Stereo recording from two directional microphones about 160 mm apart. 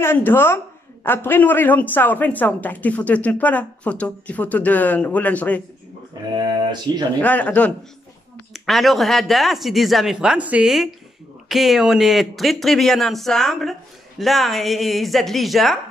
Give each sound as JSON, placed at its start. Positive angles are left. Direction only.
{"t": 0.0, "sound": "speech", "side_deg": 15}
{"t": 6.3, "sound": "speech", "side_deg": -25}
{"t": 7.2, "sound": "speech", "side_deg": 10}